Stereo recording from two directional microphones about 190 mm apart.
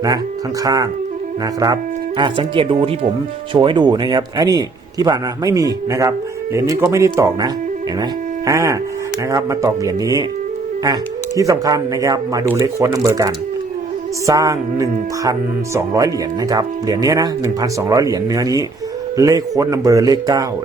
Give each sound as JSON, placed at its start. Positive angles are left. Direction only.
{"t": 0.6, "sound": "a man's voice", "side_deg": -20}
{"t": 11.3, "sound": "speech", "side_deg": -15}